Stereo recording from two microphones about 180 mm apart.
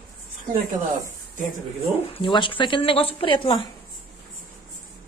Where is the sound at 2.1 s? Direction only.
25° left (ahead or behind).